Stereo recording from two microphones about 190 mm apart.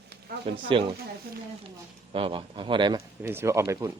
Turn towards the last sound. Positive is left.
turn(degrees=-15)  # may be behind; listen again after turning